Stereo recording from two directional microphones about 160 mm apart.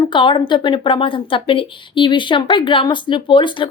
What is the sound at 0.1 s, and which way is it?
Speech, 30° left (ahead or behind).